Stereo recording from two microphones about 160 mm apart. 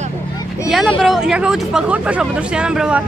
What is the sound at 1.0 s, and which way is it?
Speech, 5° right (ahead or behind).